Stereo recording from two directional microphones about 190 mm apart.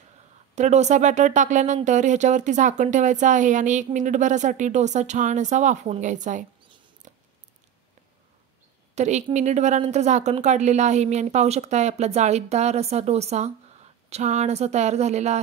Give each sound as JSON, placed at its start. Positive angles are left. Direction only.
{"t": 0.6, "sound": "speech", "side_deg": -35}
{"t": 8.9, "sound": "speech", "side_deg": -35}